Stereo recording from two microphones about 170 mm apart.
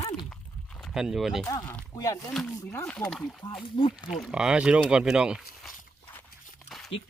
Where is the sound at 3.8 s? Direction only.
30° left (ahead or behind).